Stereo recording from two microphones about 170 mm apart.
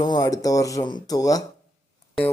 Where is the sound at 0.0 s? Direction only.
25° left (ahead or behind).